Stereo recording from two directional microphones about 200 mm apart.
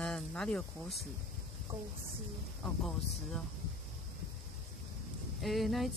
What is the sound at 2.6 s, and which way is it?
Speech, centre (ahead or behind).